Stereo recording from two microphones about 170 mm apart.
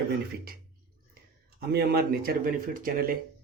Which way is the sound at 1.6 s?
70° right (ahead or behind).